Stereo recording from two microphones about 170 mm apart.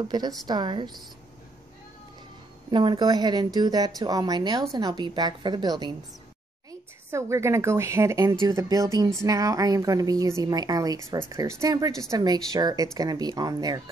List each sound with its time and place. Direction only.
0.5 s a woman's voice: 25° right (ahead or behind)
2.7 s a woman's voice: 30° right (ahead or behind)
7.1 s a woman's voice: 15° right (ahead or behind)